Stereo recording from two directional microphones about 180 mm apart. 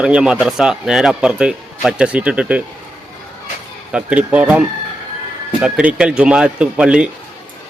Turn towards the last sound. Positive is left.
turn(degrees=-5)  # may be behind; listen again after turning